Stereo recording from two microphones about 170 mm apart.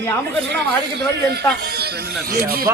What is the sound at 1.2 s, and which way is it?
Speech, 70° right (ahead or behind).